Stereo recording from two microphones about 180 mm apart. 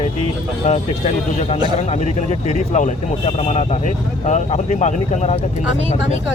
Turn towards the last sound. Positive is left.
turn(degrees=40)  # may be behind; listen again after turning